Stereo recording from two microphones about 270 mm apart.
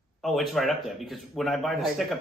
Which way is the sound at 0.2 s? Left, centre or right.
Centre.